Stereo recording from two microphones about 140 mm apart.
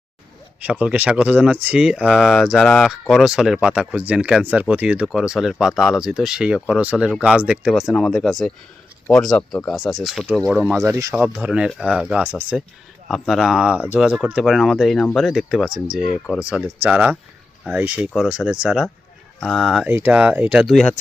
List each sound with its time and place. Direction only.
0.6 s speech: 10° right (ahead or behind)
10.8 s speech: 20° right (ahead or behind)
11.4 s speech: 5° right (ahead or behind)
13.1 s speech: centre (ahead or behind)
19.9 s speech: 15° right (ahead or behind); by 20.9 s centre (ahead or behind)